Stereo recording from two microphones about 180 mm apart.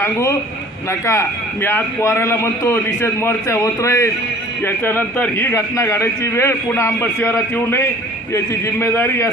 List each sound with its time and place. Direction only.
0.0 s a man's voice: 15° left (ahead or behind)